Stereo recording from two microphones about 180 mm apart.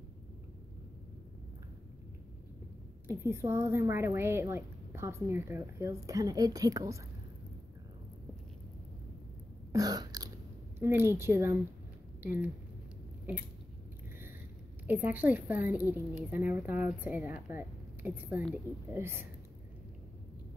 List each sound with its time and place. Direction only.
3.1 s a woman's voice: 15° right (ahead or behind)
9.7 s a sound: 20° right (ahead or behind)
10.8 s a woman's voice: 15° right (ahead or behind)
14.9 s a woman's voice: 10° right (ahead or behind)